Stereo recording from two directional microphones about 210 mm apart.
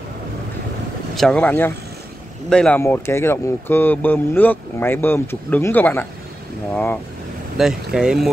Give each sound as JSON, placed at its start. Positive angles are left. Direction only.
{"t": 1.1, "sound": "speech", "side_deg": 5}
{"t": 7.5, "sound": "speech", "side_deg": 0}